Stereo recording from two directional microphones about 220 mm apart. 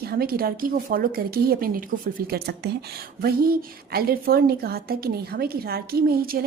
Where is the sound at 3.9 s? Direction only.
45° right (ahead or behind).